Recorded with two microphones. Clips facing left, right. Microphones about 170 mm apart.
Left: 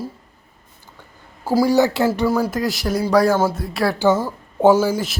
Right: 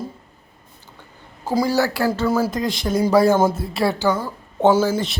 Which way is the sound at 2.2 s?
Centre (ahead or behind).